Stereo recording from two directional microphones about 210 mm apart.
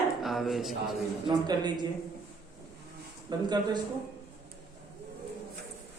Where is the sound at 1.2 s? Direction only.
20° right (ahead or behind).